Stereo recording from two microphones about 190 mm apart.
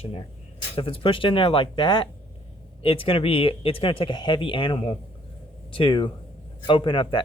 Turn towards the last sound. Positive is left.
turn(degrees=25)  # may be behind; listen again after turning